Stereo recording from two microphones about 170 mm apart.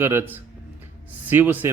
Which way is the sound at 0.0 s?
15° right (ahead or behind).